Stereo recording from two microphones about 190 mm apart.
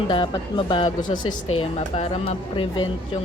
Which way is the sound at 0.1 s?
25° left (ahead or behind).